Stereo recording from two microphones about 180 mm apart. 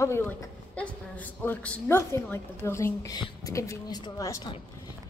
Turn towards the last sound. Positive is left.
turn(degrees=20)  # may be behind; listen again after turning